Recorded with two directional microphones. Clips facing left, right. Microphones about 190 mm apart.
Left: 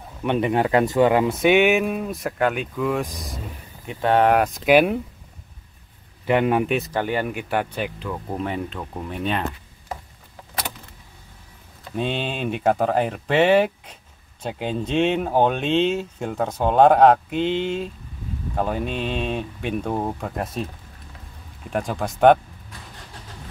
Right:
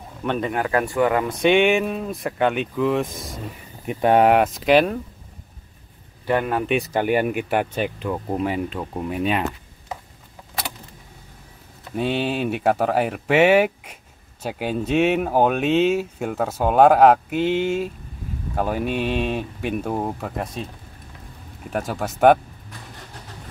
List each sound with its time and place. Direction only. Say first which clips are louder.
0.2 s speech: left 3 dB; 15° left (ahead or behind)
1.3 s speech: even; 5° left (ahead or behind)
3.8 s speech: right 2 dB; 15° right (ahead or behind); by 5.0 s 10° left (ahead or behind)
6.2 s speech: left 2 dB; 15° left (ahead or behind)
6.8 s speech: right 4 dB; 15° right (ahead or behind)
12.0 s speech: right 3 dB; 5° right (ahead or behind)
21.7 s speech: even; 5° right (ahead or behind)